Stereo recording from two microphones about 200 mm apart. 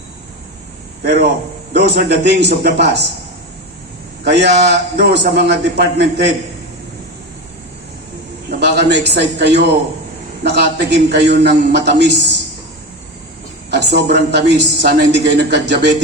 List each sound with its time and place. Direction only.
1.0 s a woman's voice: 55° right (ahead or behind)
4.2 s a man's voice: 55° right (ahead or behind)
8.4 s a man's voice: 55° right (ahead or behind)
13.7 s a woman's voice: 55° right (ahead or behind)